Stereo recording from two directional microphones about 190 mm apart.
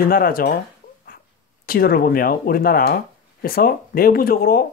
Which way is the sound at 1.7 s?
50° left (ahead or behind).